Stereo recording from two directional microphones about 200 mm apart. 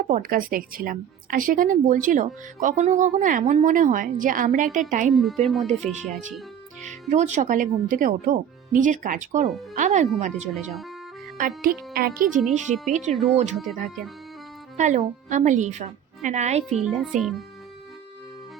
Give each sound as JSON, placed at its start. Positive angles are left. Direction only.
{"t": 0.0, "sound": "a woman's voice", "side_deg": -45}
{"t": 5.5, "sound": "speech", "side_deg": 0}
{"t": 7.1, "sound": "a woman's voice", "side_deg": -35}
{"t": 10.5, "sound": "speech", "side_deg": 0}
{"t": 11.3, "sound": "speech", "side_deg": -45}
{"t": 12.4, "sound": "speech", "side_deg": 0}
{"t": 13.3, "sound": "a woman's voice", "side_deg": -35}
{"t": 13.6, "sound": "speech", "side_deg": 0}
{"t": 14.8, "sound": "a woman's voice", "side_deg": -35}
{"t": 16.8, "sound": "speech", "side_deg": 0}